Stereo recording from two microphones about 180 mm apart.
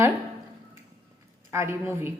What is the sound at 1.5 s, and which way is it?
Speech, 15° right (ahead or behind).